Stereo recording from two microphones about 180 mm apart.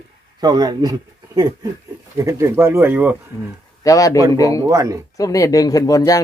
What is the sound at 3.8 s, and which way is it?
Speech, 20° left (ahead or behind).